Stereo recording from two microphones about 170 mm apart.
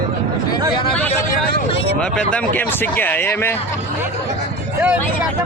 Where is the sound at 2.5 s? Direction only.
10° left (ahead or behind).